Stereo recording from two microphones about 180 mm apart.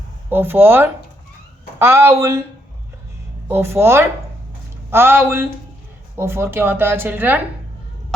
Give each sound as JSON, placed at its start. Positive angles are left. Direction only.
{"t": 0.3, "sound": "speech", "side_deg": -10}
{"t": 3.5, "sound": "speech", "side_deg": -15}